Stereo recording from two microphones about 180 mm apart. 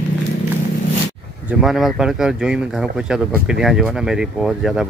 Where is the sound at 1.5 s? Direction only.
Centre (ahead or behind).